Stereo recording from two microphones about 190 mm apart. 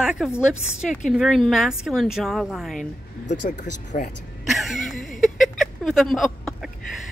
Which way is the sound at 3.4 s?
40° left (ahead or behind).